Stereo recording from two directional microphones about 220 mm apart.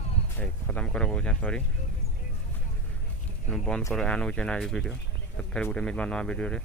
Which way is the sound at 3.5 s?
Centre (ahead or behind).